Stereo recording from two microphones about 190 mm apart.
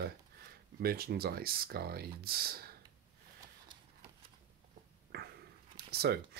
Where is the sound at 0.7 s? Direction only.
55° right (ahead or behind).